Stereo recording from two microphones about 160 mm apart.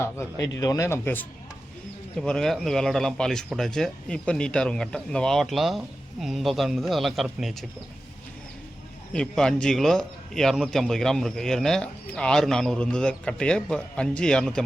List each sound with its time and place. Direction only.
0.0 s a man's voice: 20° left (ahead or behind); by 7.6 s centre (ahead or behind)
9.1 s speech: 5° left (ahead or behind)